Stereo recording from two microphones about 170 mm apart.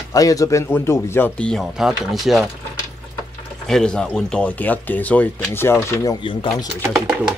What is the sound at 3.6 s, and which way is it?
Speech, 5° left (ahead or behind).